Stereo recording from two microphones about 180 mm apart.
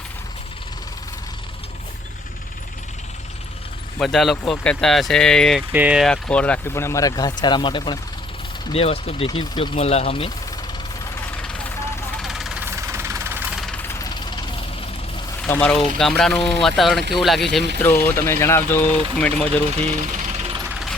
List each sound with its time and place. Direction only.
4.0 s speech: centre (ahead or behind); by 10.3 s 30° left (ahead or behind)
11.3 s vehicle: 10° left (ahead or behind)
12.2 s vehicle: centre (ahead or behind)
12.6 s vehicle: 15° right (ahead or behind)
15.4 s speech: 5° left (ahead or behind)
19.7 s jackhammer: 35° right (ahead or behind)